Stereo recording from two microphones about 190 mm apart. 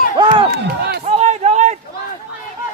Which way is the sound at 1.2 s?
35° right (ahead or behind).